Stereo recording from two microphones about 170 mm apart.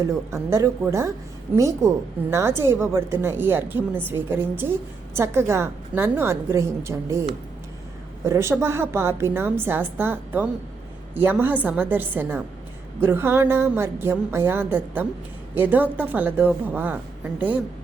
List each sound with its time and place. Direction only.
0.0 s a woman's voice: 15° right (ahead or behind)